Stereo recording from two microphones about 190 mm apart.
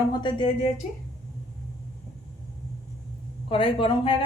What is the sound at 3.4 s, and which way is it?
Speech, 25° left (ahead or behind).